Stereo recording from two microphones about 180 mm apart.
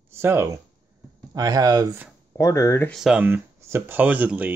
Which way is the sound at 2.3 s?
15° left (ahead or behind).